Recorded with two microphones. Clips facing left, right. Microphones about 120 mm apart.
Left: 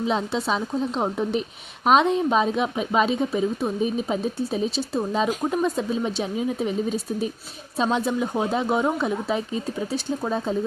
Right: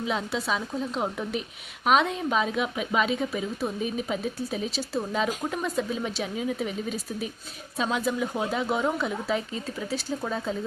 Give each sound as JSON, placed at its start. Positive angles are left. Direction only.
{"t": 0.1, "sound": "speech", "side_deg": 25}